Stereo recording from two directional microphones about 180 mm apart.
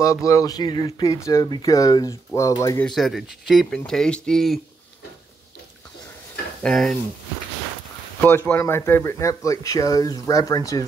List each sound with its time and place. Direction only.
0.0 s speech: 15° left (ahead or behind)
2.9 s speech: centre (ahead or behind)
6.6 s speech: centre (ahead or behind)
8.2 s speech: 10° left (ahead or behind)